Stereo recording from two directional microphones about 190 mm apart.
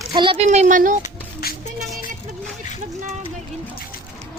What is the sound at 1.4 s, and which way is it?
Music, 55° left (ahead or behind).